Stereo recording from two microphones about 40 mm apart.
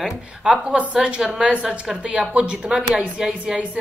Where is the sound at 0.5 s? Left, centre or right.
Right.